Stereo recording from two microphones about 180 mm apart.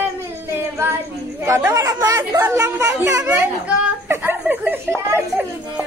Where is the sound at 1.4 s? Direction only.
20° right (ahead or behind).